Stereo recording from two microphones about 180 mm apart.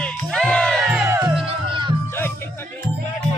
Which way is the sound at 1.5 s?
30° right (ahead or behind).